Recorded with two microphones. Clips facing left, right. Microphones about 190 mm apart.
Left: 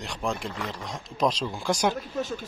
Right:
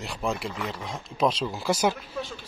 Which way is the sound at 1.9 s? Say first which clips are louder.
Left 4 dB; 45° left (ahead or behind).